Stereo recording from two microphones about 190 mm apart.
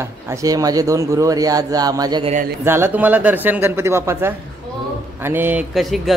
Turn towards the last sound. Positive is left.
turn(degrees=0)  # may be behind; listen again after turning